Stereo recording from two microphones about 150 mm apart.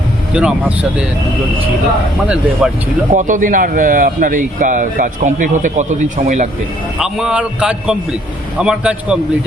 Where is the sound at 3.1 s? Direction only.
60° right (ahead or behind).